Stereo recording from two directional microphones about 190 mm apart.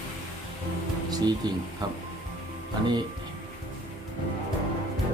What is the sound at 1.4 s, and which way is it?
Speech, 20° right (ahead or behind).